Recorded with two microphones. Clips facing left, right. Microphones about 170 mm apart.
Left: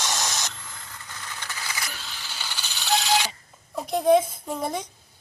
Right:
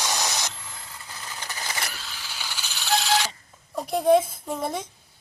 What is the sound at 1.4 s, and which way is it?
Vehicle, 35° right (ahead or behind).